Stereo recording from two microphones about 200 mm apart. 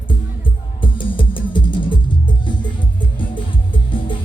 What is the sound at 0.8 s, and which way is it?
Music, 25° left (ahead or behind).